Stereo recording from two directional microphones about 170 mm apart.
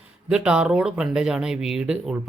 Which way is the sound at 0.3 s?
5° right (ahead or behind).